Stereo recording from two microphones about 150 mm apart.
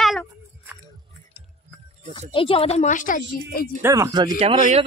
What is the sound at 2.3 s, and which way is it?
Speech, 40° left (ahead or behind).